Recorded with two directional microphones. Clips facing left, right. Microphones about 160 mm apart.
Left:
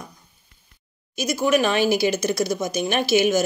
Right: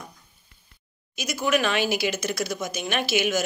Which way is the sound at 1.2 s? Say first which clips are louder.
Left 4 dB; 35° left (ahead or behind).